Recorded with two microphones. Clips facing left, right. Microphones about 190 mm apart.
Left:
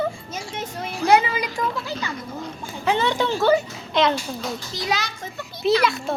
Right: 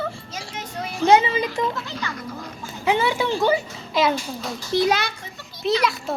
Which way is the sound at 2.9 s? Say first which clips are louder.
Even; 10° right (ahead or behind).